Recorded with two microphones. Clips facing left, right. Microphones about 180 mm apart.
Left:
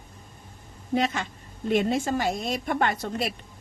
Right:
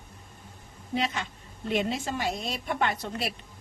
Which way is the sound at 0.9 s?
50° left (ahead or behind).